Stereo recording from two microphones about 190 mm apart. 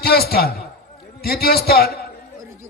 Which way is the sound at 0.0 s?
55° left (ahead or behind).